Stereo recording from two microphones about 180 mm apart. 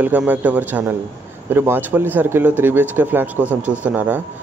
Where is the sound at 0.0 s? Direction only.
10° right (ahead or behind).